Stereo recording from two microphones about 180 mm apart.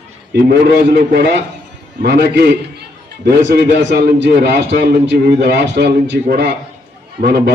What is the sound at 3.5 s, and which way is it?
A man's voice, 65° right (ahead or behind).